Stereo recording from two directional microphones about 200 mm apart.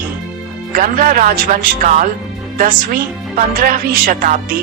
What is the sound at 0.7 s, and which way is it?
A woman's voice, 40° right (ahead or behind).